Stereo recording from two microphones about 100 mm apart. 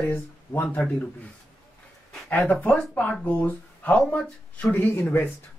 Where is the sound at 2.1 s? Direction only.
15° left (ahead or behind).